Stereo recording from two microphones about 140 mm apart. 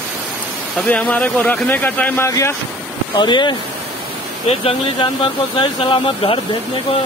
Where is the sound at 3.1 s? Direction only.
35° left (ahead or behind).